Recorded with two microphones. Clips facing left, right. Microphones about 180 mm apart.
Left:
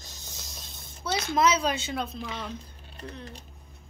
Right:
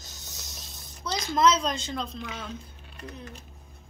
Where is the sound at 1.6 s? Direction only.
5° left (ahead or behind).